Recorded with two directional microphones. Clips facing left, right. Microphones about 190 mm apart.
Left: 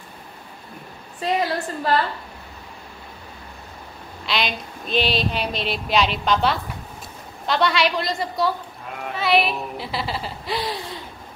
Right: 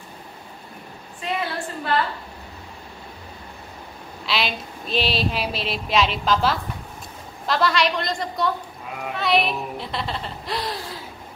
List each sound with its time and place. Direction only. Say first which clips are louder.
1.2 s a woman's voice: left 5 dB; 40° left (ahead or behind)
4.3 s speech: left 1 dB; centre (ahead or behind)